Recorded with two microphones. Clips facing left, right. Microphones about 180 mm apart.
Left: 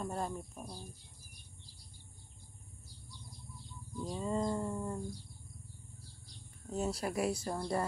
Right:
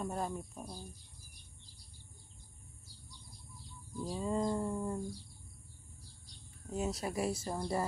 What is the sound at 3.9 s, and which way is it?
Speech, 5° right (ahead or behind).